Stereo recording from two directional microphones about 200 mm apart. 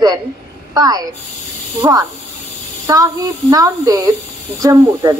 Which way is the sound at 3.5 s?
20° right (ahead or behind).